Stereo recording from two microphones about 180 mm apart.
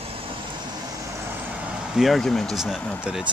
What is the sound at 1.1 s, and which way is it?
Vehicle, 10° right (ahead or behind).